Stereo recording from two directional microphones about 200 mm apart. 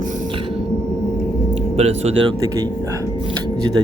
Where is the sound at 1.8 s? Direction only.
30° right (ahead or behind).